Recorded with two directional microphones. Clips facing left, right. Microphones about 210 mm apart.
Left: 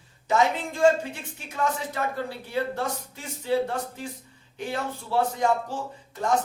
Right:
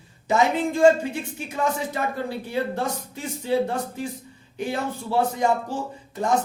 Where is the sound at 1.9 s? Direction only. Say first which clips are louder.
Right 3 dB; 15° right (ahead or behind).